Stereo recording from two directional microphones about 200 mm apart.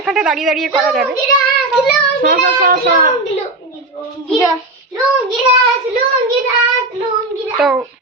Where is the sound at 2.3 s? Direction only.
45° right (ahead or behind).